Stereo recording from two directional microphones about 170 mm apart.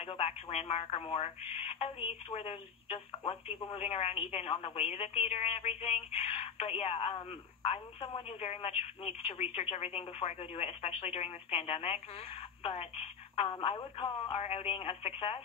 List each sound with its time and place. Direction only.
0.0 s telephone: 35° left (ahead or behind)
0.5 s speech: 35° left (ahead or behind)